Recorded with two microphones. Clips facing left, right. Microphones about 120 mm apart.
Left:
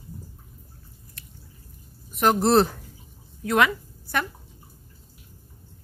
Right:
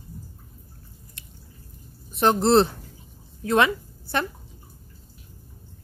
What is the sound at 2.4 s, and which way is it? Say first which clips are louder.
A woman's voice: right 1 dB; 25° right (ahead or behind).